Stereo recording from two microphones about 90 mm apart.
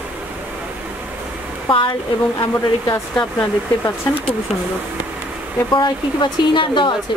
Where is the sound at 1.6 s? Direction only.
65° left (ahead or behind).